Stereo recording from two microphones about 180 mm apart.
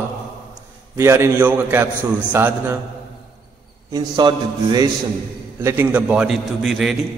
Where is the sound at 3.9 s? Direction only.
25° right (ahead or behind).